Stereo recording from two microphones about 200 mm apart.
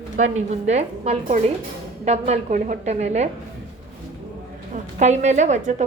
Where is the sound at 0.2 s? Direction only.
35° right (ahead or behind).